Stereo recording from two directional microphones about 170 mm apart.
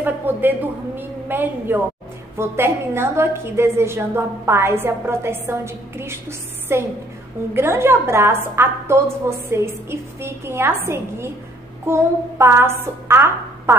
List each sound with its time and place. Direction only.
0.0 s a woman's voice: 10° right (ahead or behind)